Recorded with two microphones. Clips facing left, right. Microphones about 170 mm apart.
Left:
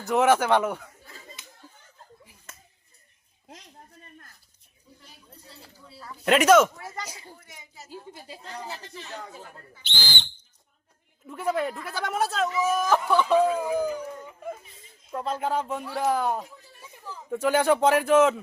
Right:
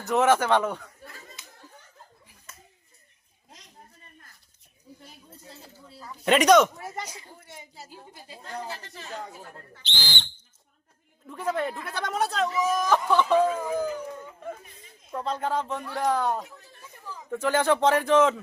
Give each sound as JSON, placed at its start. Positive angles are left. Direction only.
{"t": 0.0, "sound": "speech", "side_deg": 10}
{"t": 6.2, "sound": "speech", "side_deg": 0}
{"t": 6.7, "sound": "speech", "side_deg": -25}
{"t": 7.9, "sound": "a woman's voice", "side_deg": 20}
{"t": 11.3, "sound": "speech", "side_deg": 5}